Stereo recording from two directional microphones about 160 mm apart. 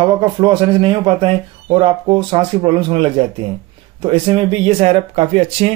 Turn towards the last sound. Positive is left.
turn(degrees=-40)  # may be behind; listen again after turning